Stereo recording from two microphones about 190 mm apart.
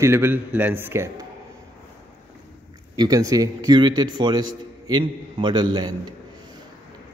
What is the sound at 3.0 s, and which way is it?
A man's voice, 20° right (ahead or behind).